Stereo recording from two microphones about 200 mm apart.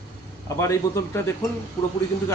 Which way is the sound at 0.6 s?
15° left (ahead or behind).